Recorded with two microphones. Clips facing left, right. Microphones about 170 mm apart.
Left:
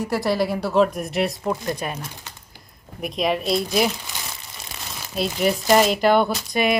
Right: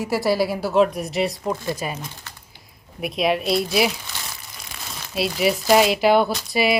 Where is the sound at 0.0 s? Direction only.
5° right (ahead or behind).